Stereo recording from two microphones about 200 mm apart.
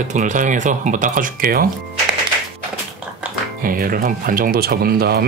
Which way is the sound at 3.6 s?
45° right (ahead or behind).